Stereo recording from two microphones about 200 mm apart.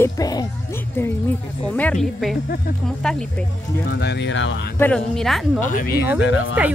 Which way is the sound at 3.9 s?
60° left (ahead or behind).